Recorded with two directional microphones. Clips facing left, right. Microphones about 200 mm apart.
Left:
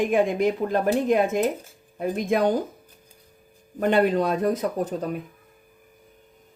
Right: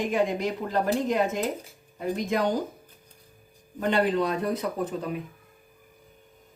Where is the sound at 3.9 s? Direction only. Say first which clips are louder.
Left 3 dB; 45° left (ahead or behind).